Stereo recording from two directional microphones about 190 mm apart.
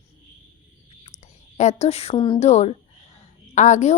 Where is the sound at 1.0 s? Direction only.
35° left (ahead or behind).